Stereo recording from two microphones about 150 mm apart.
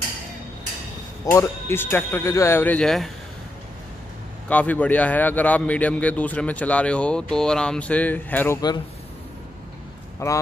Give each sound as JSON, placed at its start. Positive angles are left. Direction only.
{"t": 1.2, "sound": "a man's voice", "side_deg": 20}
{"t": 4.5, "sound": "a man's voice", "side_deg": 10}
{"t": 8.5, "sound": "speech", "side_deg": 25}
{"t": 10.2, "sound": "speech", "side_deg": 20}